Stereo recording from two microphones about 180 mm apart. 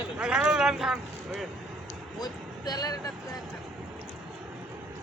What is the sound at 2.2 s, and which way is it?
Speech, 20° left (ahead or behind).